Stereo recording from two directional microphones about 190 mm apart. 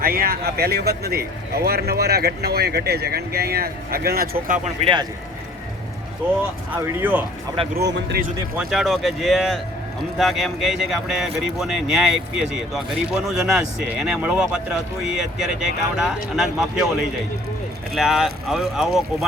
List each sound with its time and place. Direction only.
0.0 s speech: 50° right (ahead or behind)
6.7 s speech: 10° right (ahead or behind)
7.9 s speech: 65° right (ahead or behind)
8.5 s speech: centre (ahead or behind)
17.9 s speech: centre (ahead or behind)